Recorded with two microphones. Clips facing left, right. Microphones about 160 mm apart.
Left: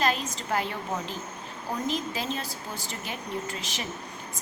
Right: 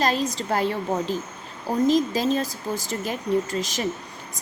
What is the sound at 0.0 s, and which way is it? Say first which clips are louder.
Speech: right 4 dB; 35° right (ahead or behind).